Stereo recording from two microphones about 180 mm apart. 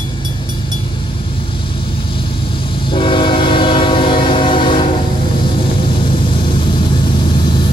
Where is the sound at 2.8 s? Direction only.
30° left (ahead or behind).